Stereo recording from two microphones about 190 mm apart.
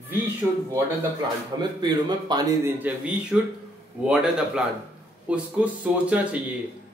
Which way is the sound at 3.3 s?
5° right (ahead or behind).